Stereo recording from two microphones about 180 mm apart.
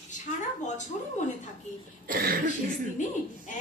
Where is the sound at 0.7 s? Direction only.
40° left (ahead or behind).